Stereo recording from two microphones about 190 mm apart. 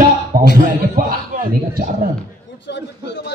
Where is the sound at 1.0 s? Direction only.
50° right (ahead or behind).